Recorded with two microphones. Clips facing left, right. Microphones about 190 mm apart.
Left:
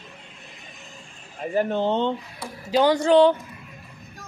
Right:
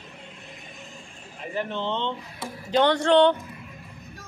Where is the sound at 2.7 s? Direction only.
5° left (ahead or behind).